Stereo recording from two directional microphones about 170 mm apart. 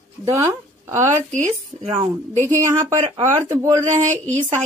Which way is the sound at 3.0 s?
30° right (ahead or behind).